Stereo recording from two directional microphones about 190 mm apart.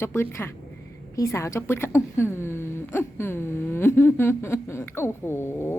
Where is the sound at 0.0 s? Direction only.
15° left (ahead or behind).